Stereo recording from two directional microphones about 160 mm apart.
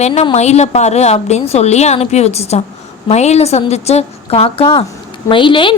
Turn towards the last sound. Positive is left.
turn(degrees=30)  # may be behind; listen again after turning